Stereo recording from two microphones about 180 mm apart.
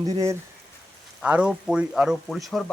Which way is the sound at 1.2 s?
5° right (ahead or behind).